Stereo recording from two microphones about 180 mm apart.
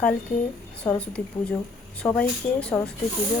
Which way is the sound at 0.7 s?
5° left (ahead or behind).